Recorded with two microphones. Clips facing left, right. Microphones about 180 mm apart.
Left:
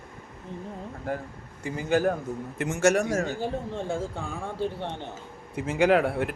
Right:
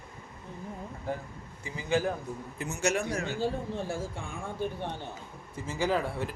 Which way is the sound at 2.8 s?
45° left (ahead or behind).